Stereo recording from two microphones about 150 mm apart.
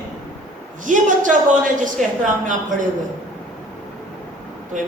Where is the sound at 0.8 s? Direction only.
60° right (ahead or behind).